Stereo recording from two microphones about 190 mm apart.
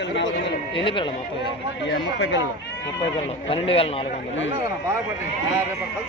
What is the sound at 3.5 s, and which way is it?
Speech, 30° left (ahead or behind).